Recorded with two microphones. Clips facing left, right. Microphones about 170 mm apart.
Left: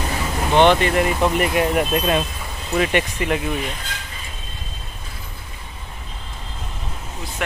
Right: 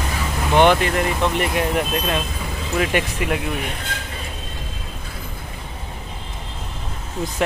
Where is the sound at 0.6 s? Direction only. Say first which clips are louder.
Left 1 dB; 5° right (ahead or behind).